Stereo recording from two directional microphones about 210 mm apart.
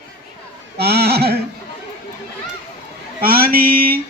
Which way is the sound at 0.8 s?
50° right (ahead or behind).